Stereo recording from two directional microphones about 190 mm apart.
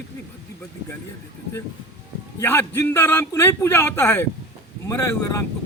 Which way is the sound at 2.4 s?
10° left (ahead or behind).